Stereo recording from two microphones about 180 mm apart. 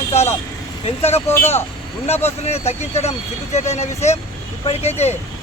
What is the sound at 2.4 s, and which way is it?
Speech, 35° left (ahead or behind).